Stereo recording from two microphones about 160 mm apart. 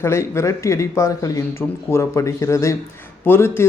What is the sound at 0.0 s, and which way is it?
Speech, 15° left (ahead or behind).